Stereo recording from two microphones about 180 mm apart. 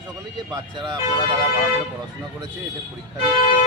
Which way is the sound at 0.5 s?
25° right (ahead or behind).